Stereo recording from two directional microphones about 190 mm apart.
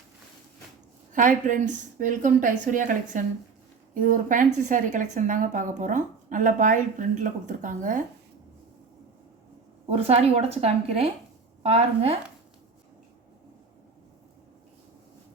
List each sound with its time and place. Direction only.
1.1 s a woman's voice: 45° right (ahead or behind)
9.9 s a woman's voice: 30° right (ahead or behind)